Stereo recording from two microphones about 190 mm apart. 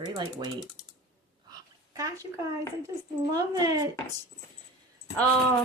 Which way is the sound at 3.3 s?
20° right (ahead or behind).